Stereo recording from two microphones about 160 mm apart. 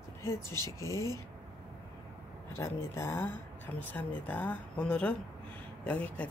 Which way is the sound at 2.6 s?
15° left (ahead or behind).